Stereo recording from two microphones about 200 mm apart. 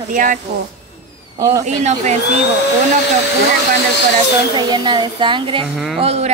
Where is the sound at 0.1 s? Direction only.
40° right (ahead or behind).